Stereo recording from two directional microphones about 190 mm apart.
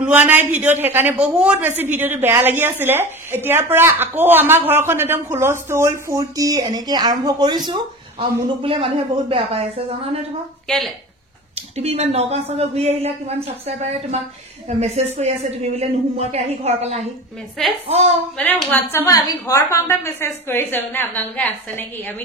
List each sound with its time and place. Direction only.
0.0 s a woman's voice: 10° right (ahead or behind); by 9.7 s 30° right (ahead or behind)
11.7 s a woman's voice: 35° right (ahead or behind)
18.4 s a woman's voice: 10° left (ahead or behind)